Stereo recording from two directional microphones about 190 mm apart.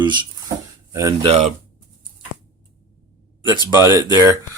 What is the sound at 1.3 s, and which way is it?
Speech, 35° right (ahead or behind).